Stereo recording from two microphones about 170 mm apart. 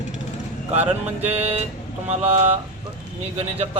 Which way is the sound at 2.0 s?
35° right (ahead or behind).